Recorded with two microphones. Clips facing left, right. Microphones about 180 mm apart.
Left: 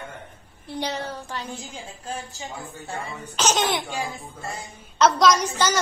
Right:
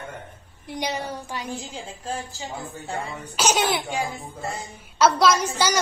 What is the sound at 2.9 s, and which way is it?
A child's voice, 10° right (ahead or behind).